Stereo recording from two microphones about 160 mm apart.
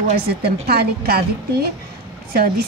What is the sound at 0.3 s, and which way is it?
A woman's voice, 85° right.